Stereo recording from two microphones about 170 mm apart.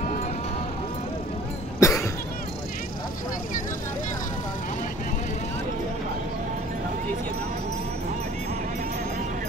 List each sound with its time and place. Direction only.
1.8 s cough: 20° left (ahead or behind)